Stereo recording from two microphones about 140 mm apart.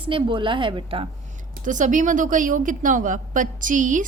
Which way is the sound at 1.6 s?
65° right (ahead or behind).